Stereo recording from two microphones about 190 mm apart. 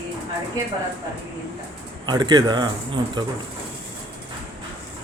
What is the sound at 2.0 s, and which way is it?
Speech, 20° right (ahead or behind).